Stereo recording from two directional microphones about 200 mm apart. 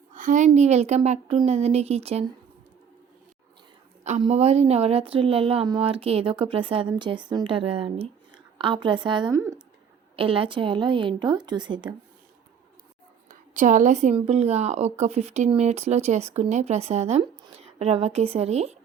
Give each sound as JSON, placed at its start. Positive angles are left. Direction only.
{"t": 0.1, "sound": "speech", "side_deg": -40}
{"t": 4.0, "sound": "a woman's voice", "side_deg": -35}
{"t": 10.2, "sound": "a woman's voice", "side_deg": -25}
{"t": 13.5, "sound": "speech", "side_deg": -40}